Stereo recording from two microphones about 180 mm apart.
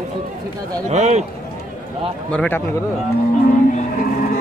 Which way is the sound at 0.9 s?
40° right (ahead or behind).